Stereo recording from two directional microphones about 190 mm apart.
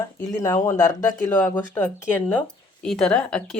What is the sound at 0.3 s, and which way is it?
Speech, 15° left (ahead or behind).